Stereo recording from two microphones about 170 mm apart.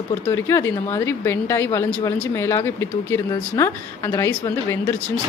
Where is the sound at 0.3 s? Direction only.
15° left (ahead or behind).